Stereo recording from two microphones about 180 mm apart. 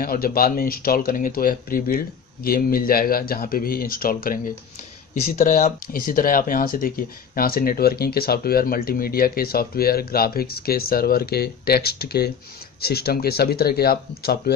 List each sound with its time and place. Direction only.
0.0 s speech: 55° left (ahead or behind)